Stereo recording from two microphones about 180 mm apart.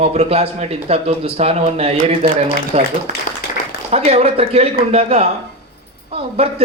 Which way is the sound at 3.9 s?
35° right (ahead or behind).